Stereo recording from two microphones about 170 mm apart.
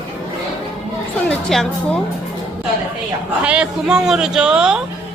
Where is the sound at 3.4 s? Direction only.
5° right (ahead or behind).